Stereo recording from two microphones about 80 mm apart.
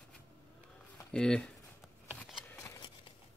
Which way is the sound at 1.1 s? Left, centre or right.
Centre.